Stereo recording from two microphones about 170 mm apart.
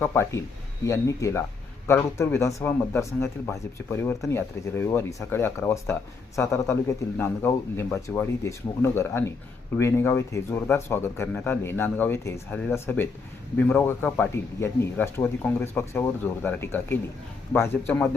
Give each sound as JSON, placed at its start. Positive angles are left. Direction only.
{"t": 0.0, "sound": "speech", "side_deg": 15}